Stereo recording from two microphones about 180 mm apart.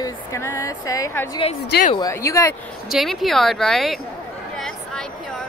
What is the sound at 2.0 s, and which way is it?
Speech, 15° left (ahead or behind).